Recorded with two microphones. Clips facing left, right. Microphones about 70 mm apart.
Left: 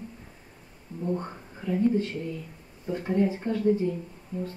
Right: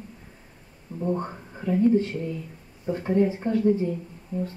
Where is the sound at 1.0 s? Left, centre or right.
Right.